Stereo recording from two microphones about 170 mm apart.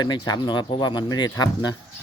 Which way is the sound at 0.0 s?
25° left (ahead or behind).